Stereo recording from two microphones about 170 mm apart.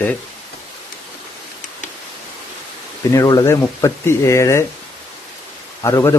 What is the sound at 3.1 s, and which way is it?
Speech, 20° left (ahead or behind).